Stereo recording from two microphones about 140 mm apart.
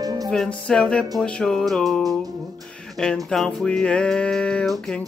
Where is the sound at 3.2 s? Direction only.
5° left (ahead or behind).